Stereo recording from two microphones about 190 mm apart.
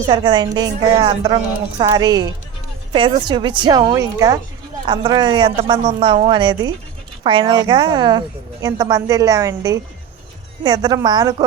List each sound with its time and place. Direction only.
0.1 s a woman's voice: 25° right (ahead or behind)